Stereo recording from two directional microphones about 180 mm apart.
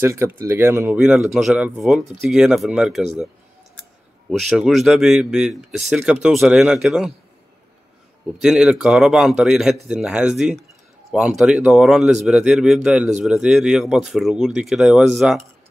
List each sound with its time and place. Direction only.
0.0 s speech: 15° right (ahead or behind)
4.3 s speech: centre (ahead or behind)
8.4 s speech: 5° right (ahead or behind)